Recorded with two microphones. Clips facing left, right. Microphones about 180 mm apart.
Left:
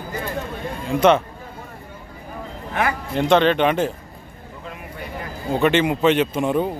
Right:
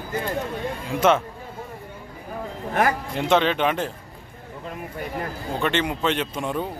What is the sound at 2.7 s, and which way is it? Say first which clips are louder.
Speech: right 1 dB; 40° right (ahead or behind).